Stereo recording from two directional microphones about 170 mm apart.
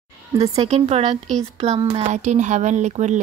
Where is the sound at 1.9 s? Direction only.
45° right (ahead or behind).